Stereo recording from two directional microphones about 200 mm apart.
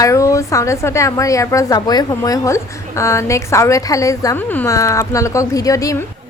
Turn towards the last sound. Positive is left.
turn(degrees=15)  # may be behind; listen again after turning